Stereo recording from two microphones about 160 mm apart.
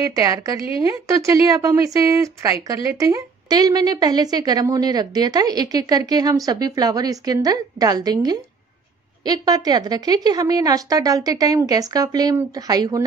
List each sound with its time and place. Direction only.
0.2 s speech: 20° right (ahead or behind)